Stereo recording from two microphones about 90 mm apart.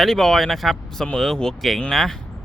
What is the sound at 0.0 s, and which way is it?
Speech, 5° left (ahead or behind).